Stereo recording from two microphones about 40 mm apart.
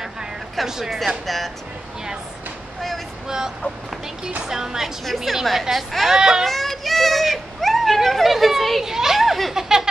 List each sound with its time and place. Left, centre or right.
0.6 s a woman's voice: centre
3.3 s a woman's voice: centre
6.1 s speech: centre
6.4 s children playing: centre
8.8 s speech: centre